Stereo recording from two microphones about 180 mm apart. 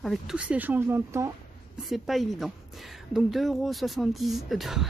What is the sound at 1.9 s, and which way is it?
A woman's voice, centre (ahead or behind).